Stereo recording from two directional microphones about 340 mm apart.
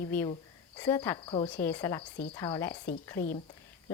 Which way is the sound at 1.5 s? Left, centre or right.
Centre.